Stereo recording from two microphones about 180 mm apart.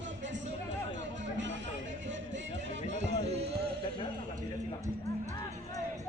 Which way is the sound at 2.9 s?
35° right (ahead or behind).